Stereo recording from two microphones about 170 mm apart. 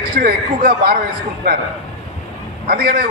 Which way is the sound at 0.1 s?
60° right (ahead or behind).